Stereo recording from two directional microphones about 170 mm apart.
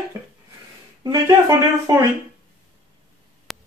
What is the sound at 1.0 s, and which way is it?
Speech, 20° right (ahead or behind).